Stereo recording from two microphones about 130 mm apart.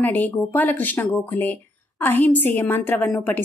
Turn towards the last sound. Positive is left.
turn(degrees=15)  # may be behind; listen again after turning